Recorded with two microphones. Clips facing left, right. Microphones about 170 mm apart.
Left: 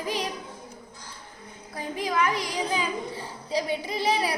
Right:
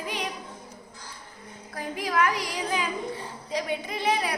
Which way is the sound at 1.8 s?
25° left (ahead or behind).